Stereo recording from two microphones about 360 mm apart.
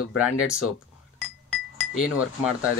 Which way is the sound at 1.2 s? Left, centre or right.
Centre.